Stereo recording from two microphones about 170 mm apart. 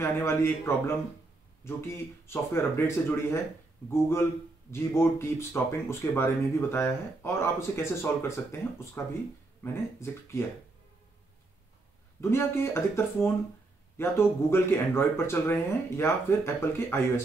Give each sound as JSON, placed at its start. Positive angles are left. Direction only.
{"t": 0.0, "sound": "speech", "side_deg": 15}
{"t": 12.2, "sound": "speech", "side_deg": 15}